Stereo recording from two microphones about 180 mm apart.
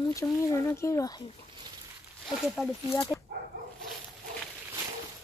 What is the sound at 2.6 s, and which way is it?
Speech, 15° left (ahead or behind).